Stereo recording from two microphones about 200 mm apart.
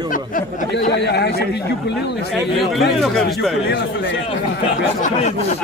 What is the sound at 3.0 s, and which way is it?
Speech, centre (ahead or behind).